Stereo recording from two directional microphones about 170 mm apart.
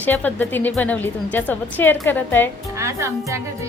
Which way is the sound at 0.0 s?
10° left (ahead or behind).